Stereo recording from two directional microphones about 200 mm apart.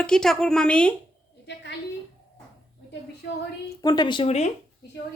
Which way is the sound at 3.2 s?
55° left (ahead or behind).